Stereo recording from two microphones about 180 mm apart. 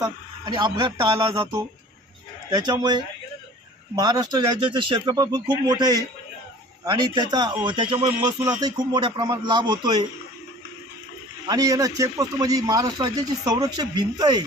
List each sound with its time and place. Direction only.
0.0 s speech: 25° right (ahead or behind)
2.5 s speech: 25° right (ahead or behind)
11.4 s speech: 20° right (ahead or behind)